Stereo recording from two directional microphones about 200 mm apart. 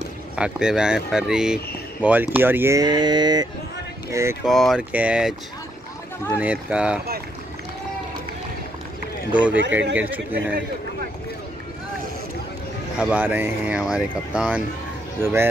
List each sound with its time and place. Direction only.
0.4 s speech: 5° right (ahead or behind)
4.5 s speech: centre (ahead or behind)
6.3 s speech: 5° right (ahead or behind)
9.3 s speech: 5° right (ahead or behind)
12.9 s speech: 5° right (ahead or behind)